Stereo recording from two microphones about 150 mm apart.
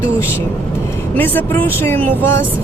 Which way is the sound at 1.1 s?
10° left (ahead or behind).